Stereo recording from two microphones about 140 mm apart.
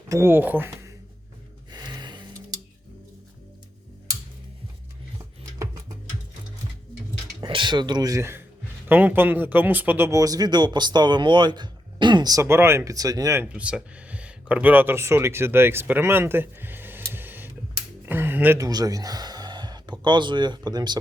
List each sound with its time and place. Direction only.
0.1 s speech: 15° right (ahead or behind)
1.7 s music: 30° right (ahead or behind)
7.4 s speech: 35° right (ahead or behind); by 10.1 s 10° right (ahead or behind)
10.1 s speech: 25° right (ahead or behind)
13.5 s speech: 10° right (ahead or behind)
18.0 s a sound: 15° right (ahead or behind)
18.6 s speech: 25° right (ahead or behind)